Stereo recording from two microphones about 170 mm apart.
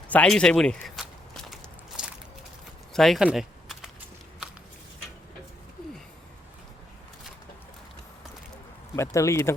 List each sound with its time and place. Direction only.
0.1 s biting: 5° left (ahead or behind)
2.9 s a sound: centre (ahead or behind)
9.0 s speech: 15° left (ahead or behind)